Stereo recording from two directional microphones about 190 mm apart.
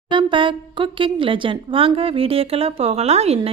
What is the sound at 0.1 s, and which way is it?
Speech, 25° right (ahead or behind).